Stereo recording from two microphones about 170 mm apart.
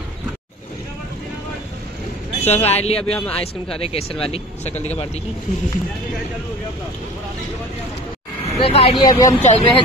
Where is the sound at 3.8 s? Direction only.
35° left (ahead or behind).